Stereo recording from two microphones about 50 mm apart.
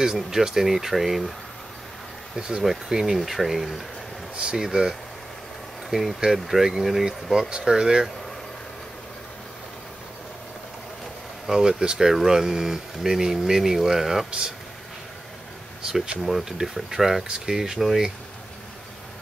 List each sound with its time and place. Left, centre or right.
0.0 s speech: centre
2.3 s speech: centre
4.4 s speech: centre
11.5 s speech: centre
15.8 s speech: centre
16.2 s speech: centre